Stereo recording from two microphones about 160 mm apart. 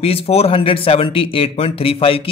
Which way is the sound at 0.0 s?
40° left (ahead or behind).